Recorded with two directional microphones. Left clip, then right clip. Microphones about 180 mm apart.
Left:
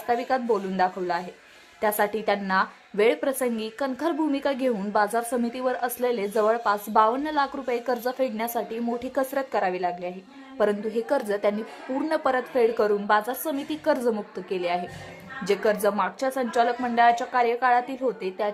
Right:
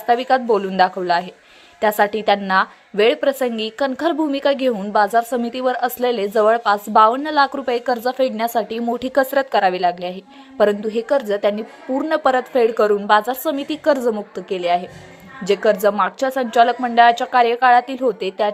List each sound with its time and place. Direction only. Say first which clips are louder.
0.1 s a woman's voice: right 8 dB; 25° right (ahead or behind)